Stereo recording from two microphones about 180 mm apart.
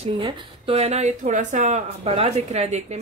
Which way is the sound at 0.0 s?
30° right (ahead or behind).